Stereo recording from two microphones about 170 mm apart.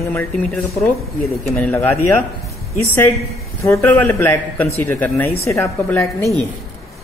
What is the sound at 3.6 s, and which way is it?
A man's voice, 15° left (ahead or behind).